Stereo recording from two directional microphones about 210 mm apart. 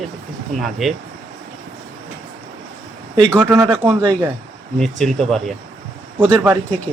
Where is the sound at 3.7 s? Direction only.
20° right (ahead or behind).